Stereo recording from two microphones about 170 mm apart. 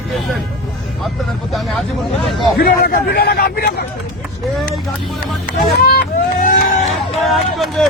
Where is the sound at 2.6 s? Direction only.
60° left (ahead or behind).